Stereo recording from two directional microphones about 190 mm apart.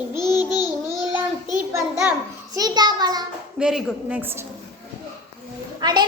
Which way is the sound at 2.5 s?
20° right (ahead or behind).